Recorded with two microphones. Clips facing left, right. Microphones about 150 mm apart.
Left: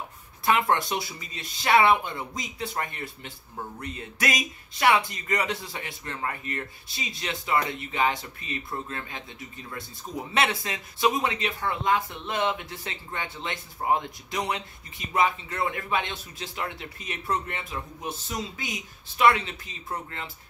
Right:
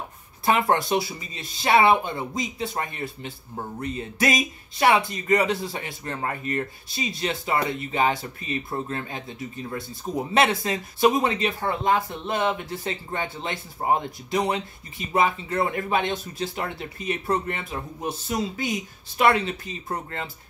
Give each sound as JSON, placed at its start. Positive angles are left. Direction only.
{"t": 0.5, "sound": "speech", "side_deg": -35}
{"t": 10.3, "sound": "speech", "side_deg": -35}